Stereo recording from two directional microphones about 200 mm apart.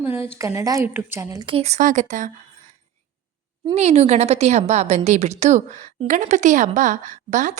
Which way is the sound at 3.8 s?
35° right (ahead or behind).